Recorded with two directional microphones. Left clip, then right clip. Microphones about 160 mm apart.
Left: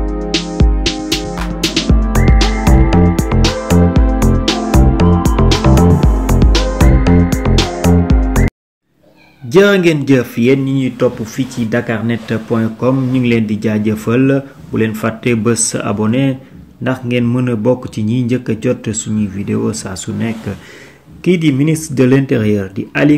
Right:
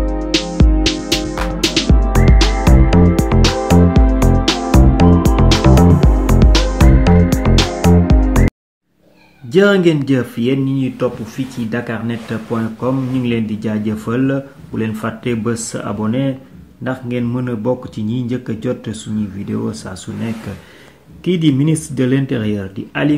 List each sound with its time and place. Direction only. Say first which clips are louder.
0.0 s music: even; centre (ahead or behind)
9.5 s speech: left 2 dB; 15° left (ahead or behind)